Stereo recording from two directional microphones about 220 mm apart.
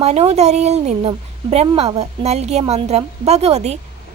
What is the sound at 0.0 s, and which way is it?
Speech, 30° right (ahead or behind).